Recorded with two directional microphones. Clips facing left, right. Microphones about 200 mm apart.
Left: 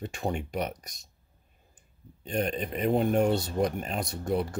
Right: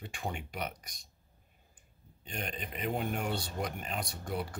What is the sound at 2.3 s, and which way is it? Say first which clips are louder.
Speech: left 11 dB; 40° left (ahead or behind).